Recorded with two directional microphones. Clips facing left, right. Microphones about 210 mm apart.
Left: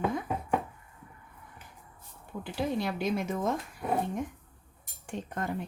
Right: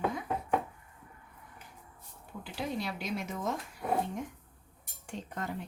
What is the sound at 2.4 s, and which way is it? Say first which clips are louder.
Speech: left 5 dB; 55° left (ahead or behind).